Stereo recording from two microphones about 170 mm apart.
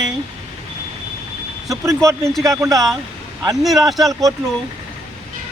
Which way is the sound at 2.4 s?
20° right (ahead or behind).